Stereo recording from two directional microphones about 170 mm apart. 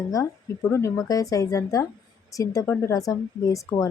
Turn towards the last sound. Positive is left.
turn(degrees=20)  # may be behind; listen again after turning